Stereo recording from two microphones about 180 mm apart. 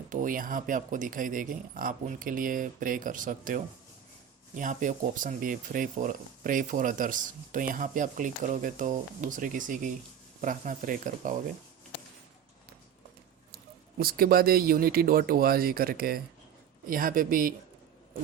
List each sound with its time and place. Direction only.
0.1 s speech: 45° right (ahead or behind)
14.0 s speech: 55° right (ahead or behind)